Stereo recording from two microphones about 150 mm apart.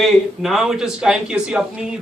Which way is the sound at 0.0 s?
Centre (ahead or behind).